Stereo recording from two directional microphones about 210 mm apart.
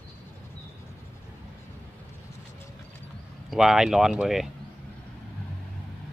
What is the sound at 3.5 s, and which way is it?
Speech, centre (ahead or behind).